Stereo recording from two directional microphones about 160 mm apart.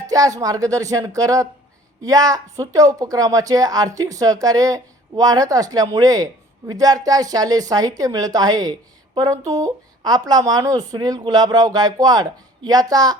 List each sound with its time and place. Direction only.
0.1 s speech: 20° right (ahead or behind)